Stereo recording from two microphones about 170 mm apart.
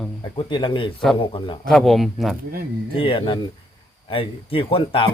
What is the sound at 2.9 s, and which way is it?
Speech, 30° left (ahead or behind).